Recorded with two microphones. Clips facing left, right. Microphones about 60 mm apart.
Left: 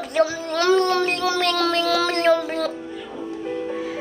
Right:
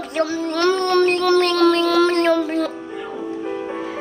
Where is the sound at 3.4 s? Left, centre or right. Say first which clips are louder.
Left 2 dB; centre.